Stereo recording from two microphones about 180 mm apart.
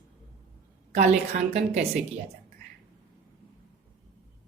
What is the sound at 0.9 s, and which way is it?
Speech, 40° right (ahead or behind).